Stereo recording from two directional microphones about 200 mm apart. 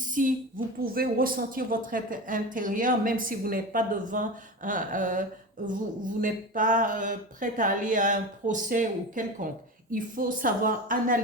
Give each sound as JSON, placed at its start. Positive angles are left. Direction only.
{"t": 0.1, "sound": "a woman's voice", "side_deg": -40}